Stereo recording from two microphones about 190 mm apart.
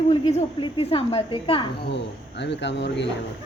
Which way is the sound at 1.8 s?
65° left (ahead or behind).